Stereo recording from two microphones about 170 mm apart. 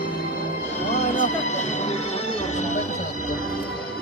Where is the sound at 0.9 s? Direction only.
45° left (ahead or behind).